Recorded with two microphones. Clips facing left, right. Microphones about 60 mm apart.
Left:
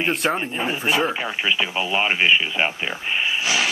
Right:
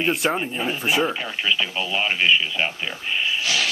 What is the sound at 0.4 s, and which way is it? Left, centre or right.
Speech, centre.